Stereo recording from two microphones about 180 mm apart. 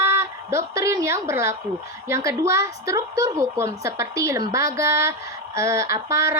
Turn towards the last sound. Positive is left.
turn(degrees=-15)  # may be behind; listen again after turning